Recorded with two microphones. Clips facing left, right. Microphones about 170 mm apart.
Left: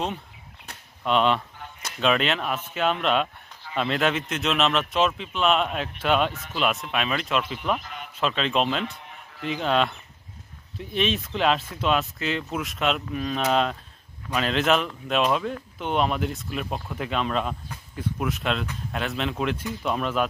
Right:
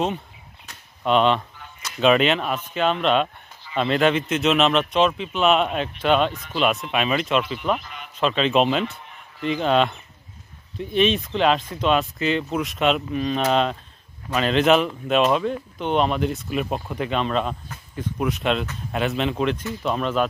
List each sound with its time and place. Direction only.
1.0 s speech: centre (ahead or behind)